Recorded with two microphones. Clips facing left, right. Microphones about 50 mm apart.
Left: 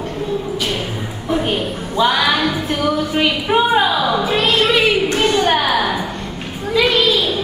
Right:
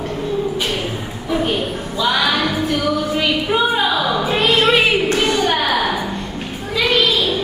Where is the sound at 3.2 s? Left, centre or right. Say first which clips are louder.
Left 4 dB; left.